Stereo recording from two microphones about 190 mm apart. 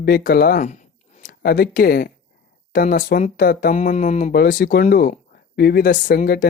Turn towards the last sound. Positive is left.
turn(degrees=50)  # may be behind; listen again after turning